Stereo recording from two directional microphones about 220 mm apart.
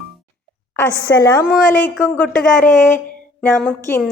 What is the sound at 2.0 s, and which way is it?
A woman's voice, 5° left (ahead or behind).